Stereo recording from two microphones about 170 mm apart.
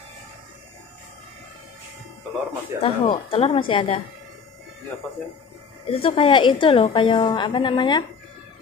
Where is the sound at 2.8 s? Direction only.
35° left (ahead or behind).